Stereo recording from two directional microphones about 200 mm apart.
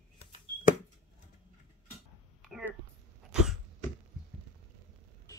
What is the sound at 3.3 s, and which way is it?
Cough, centre (ahead or behind).